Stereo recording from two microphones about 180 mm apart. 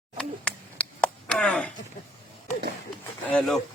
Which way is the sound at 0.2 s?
5° left (ahead or behind).